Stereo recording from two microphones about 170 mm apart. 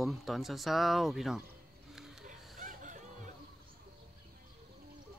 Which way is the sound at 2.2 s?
50° right (ahead or behind).